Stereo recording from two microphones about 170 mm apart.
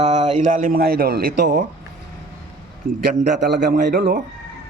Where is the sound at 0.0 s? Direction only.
40° right (ahead or behind).